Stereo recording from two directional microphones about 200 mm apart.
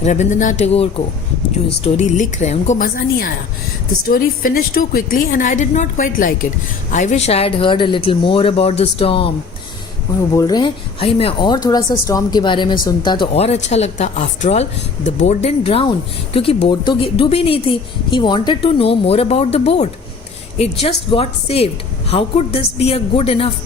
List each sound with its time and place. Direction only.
0.0 s a woman's voice: 35° left (ahead or behind)
10.3 s speech: 20° left (ahead or behind)
21.1 s speech: 30° left (ahead or behind)